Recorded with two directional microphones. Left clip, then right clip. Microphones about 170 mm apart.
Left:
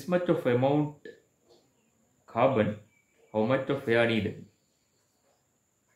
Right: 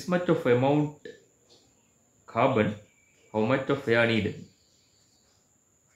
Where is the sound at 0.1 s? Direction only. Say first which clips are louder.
Right 2 dB; 25° right (ahead or behind).